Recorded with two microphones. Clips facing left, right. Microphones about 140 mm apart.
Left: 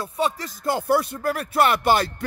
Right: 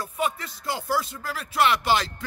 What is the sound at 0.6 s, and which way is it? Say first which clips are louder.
Speech: left 6 dB; 55° left (ahead or behind).